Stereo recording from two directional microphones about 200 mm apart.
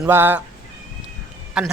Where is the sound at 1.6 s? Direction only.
Centre (ahead or behind).